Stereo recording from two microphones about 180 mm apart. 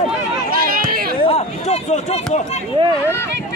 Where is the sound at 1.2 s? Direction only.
35° left (ahead or behind).